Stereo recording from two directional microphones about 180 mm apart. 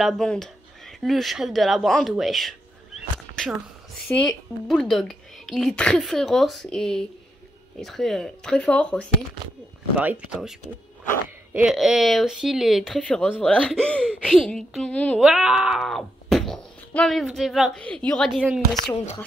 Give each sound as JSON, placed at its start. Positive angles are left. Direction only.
{"t": 0.0, "sound": "speech", "side_deg": 5}
{"t": 4.1, "sound": "speech", "side_deg": 5}
{"t": 9.9, "sound": "speech", "side_deg": -5}
{"t": 11.5, "sound": "speech", "side_deg": -5}